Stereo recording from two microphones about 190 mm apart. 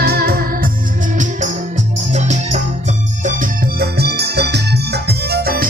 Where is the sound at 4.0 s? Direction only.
60° right (ahead or behind).